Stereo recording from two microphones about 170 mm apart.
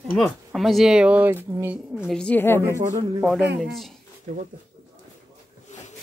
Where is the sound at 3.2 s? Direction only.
5° right (ahead or behind).